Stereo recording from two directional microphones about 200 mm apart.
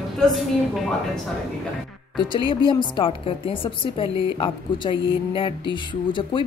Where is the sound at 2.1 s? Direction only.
25° left (ahead or behind).